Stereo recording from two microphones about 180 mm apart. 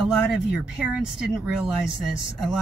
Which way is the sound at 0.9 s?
5° right (ahead or behind).